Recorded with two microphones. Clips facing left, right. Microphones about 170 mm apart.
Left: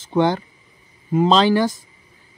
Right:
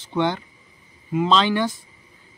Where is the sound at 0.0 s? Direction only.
40° left (ahead or behind).